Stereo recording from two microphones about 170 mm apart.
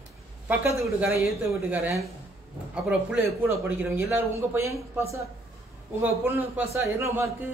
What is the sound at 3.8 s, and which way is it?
Speech, 15° right (ahead or behind).